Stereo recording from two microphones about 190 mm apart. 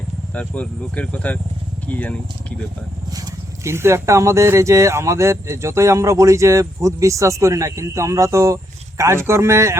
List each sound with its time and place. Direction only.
0.3 s speech: 5° left (ahead or behind)
3.1 s speech: 15° right (ahead or behind)